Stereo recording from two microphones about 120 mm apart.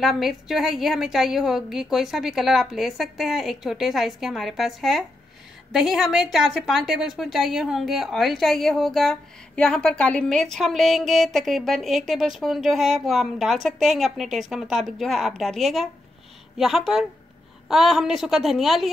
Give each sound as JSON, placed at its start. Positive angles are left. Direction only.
{"t": 0.0, "sound": "a woman's voice", "side_deg": 0}